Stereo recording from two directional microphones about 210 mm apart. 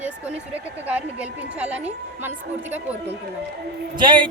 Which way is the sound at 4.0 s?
20° right (ahead or behind).